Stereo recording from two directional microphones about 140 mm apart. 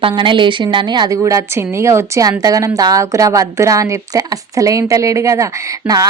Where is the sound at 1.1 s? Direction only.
20° right (ahead or behind).